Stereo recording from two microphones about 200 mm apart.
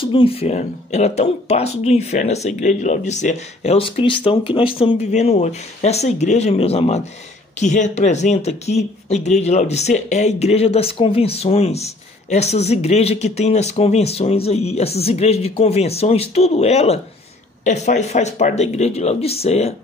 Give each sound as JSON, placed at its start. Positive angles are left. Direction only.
{"t": 0.0, "sound": "speech", "side_deg": 25}